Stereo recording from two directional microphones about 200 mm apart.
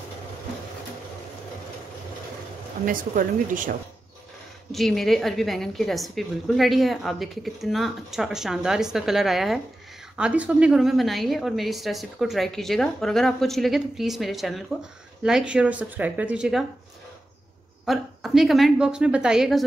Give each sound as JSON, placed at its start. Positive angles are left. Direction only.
{"t": 2.8, "sound": "speech", "side_deg": -45}
{"t": 4.7, "sound": "a woman's voice", "side_deg": 0}
{"t": 17.8, "sound": "a woman's voice", "side_deg": 0}